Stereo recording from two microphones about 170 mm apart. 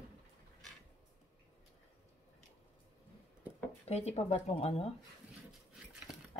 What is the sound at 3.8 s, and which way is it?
Speech, 40° left (ahead or behind).